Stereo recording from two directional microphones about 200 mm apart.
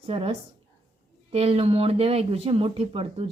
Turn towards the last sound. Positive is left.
turn(degrees=-30)  # may be behind; listen again after turning